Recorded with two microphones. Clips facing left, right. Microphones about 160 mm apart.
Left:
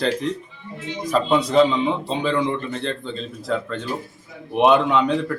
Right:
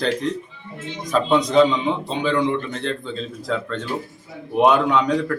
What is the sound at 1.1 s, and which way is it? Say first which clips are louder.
A man's voice: right 1 dB; 5° left (ahead or behind).